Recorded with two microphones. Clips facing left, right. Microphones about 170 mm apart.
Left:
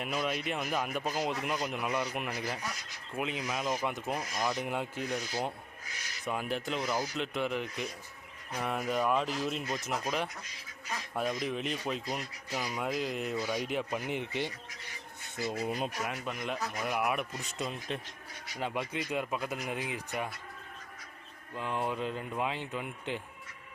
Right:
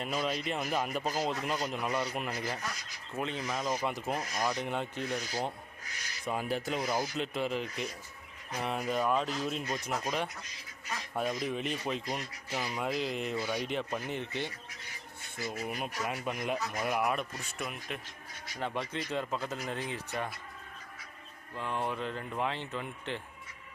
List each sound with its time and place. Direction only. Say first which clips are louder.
0.0 s speech: even; 5° left (ahead or behind)
6.8 s speech: even; 15° right (ahead or behind)
7.2 s speech: even; centre (ahead or behind); by 15.9 s 25° left (ahead or behind)
16.0 s speech: right 2 dB; 5° right (ahead or behind); by 18.0 s 25° left (ahead or behind)
18.5 s speech: left 1 dB; 15° left (ahead or behind)
21.5 s speech: left 1 dB; 15° left (ahead or behind)